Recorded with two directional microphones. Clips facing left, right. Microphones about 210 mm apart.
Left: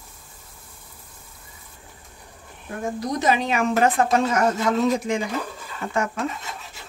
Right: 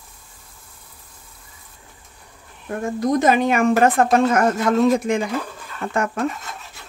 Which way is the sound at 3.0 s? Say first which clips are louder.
Right 6 dB; 50° right (ahead or behind).